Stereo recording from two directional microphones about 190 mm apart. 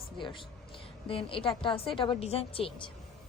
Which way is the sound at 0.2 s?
25° left (ahead or behind).